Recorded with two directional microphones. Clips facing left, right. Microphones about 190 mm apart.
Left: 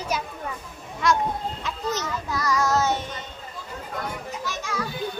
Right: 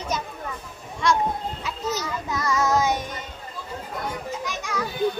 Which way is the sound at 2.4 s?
25° right (ahead or behind).